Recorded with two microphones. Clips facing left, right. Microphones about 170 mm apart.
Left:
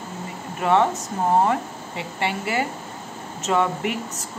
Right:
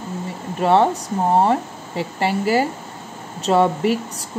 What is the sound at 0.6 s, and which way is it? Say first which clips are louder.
Speech: right 4 dB; 35° right (ahead or behind).